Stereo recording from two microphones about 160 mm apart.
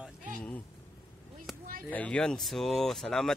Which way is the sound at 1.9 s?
10° left (ahead or behind).